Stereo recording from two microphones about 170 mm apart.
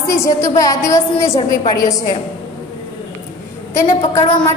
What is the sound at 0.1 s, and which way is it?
A woman's voice, 15° left (ahead or behind).